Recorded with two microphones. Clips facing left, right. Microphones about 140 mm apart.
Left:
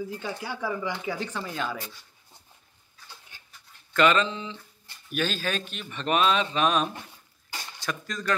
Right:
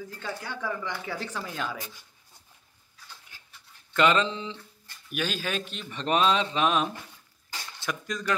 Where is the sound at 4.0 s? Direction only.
20° right (ahead or behind).